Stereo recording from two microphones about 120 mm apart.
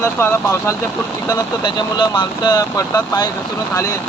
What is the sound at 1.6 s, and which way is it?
Speech, 40° left (ahead or behind).